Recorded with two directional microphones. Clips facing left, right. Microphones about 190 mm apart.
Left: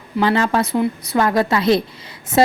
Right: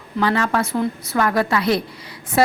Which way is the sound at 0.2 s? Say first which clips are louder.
Left 2 dB; 25° left (ahead or behind).